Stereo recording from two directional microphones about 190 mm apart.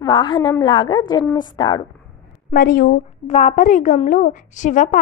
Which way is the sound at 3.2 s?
40° left (ahead or behind).